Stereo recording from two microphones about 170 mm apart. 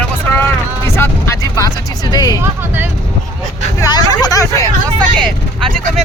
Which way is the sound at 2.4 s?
10° right (ahead or behind).